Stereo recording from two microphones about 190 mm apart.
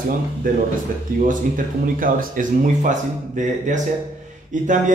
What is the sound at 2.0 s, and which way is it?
A man's voice, 45° right (ahead or behind).